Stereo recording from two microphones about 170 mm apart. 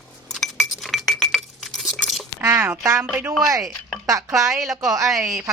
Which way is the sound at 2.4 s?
15° right (ahead or behind).